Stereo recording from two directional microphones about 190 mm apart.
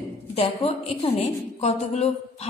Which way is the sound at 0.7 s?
30° left (ahead or behind).